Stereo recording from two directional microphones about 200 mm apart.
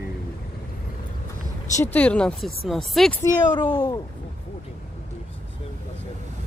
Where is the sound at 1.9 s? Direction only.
5° left (ahead or behind).